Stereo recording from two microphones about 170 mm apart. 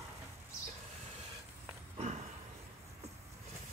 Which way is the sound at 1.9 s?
40° right (ahead or behind).